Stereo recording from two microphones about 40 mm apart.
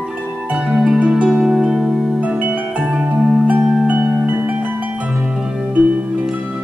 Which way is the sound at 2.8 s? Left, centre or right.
Right.